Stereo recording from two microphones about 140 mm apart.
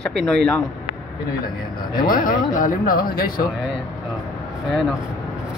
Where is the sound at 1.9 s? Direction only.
85° left.